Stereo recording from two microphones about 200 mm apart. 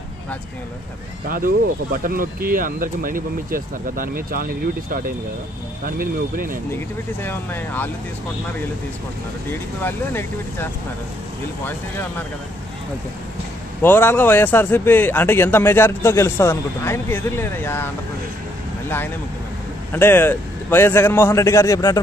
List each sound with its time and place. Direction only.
1.3 s speech: 45° right (ahead or behind)
7.2 s speech: 10° left (ahead or behind)
9.5 s speech: 10° left (ahead or behind)
13.8 s speech: 10° left (ahead or behind)
19.9 s speech: 10° left (ahead or behind)